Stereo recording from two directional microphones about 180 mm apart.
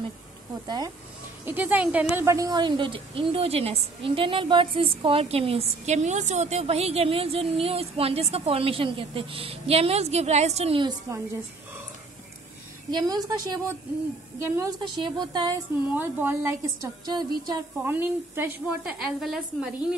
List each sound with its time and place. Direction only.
0.7 s a woman's voice: 20° right (ahead or behind)
1.4 s a woman's voice: 10° right (ahead or behind); by 10.9 s 35° right (ahead or behind)
12.9 s a woman's voice: 20° right (ahead or behind)
15.9 s a woman's voice: 10° right (ahead or behind)
17.0 s a woman's voice: 20° right (ahead or behind); by 19.7 s centre (ahead or behind)